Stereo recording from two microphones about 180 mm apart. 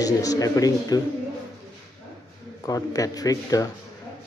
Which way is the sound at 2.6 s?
20° left (ahead or behind).